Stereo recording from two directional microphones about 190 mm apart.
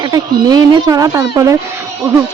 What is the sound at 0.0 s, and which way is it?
Speech, 20° right (ahead or behind).